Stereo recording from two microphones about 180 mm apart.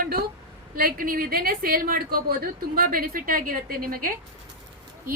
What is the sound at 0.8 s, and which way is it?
A woman's voice, 55° right (ahead or behind).